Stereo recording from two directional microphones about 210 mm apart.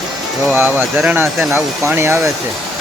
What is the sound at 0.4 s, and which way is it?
Speech, 10° right (ahead or behind).